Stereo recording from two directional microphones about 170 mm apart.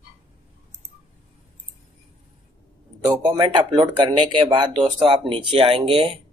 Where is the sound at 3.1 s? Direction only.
25° right (ahead or behind).